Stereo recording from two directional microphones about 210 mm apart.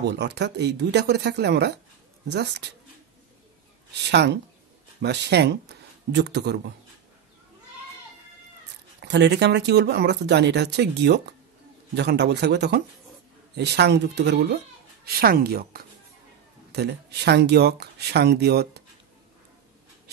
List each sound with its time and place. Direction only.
0.0 s speech: 55° right (ahead or behind)
4.1 s speech: 55° right (ahead or behind)
9.0 s speech: 55° right (ahead or behind)